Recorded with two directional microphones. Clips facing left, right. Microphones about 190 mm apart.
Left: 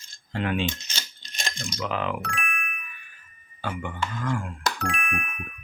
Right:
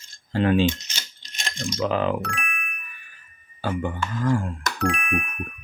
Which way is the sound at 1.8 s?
35° right (ahead or behind).